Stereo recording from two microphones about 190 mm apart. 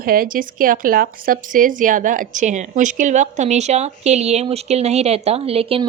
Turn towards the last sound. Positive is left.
turn(degrees=-30)  # may be behind; listen again after turning